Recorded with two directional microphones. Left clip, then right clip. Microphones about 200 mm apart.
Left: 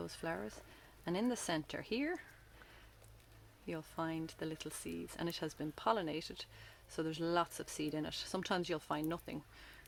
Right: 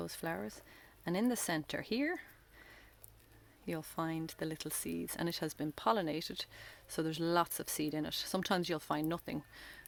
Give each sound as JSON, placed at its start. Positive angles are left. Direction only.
{"t": 0.0, "sound": "speech", "side_deg": -40}
{"t": 3.7, "sound": "speech", "side_deg": -45}